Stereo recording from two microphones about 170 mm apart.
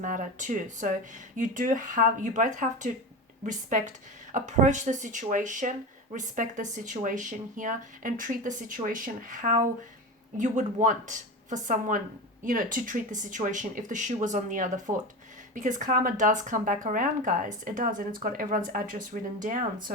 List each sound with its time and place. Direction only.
0.0 s speech: 50° right (ahead or behind)